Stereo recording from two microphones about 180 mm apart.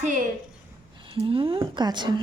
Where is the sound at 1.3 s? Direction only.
30° right (ahead or behind).